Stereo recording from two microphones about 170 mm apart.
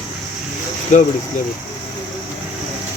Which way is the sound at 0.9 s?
45° left (ahead or behind).